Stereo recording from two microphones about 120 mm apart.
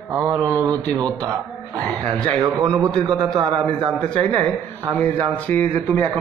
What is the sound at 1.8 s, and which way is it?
Speech, 10° left (ahead or behind).